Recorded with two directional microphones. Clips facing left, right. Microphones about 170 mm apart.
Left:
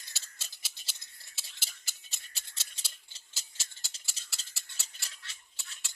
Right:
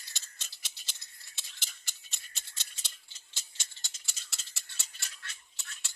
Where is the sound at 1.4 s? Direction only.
5° left (ahead or behind).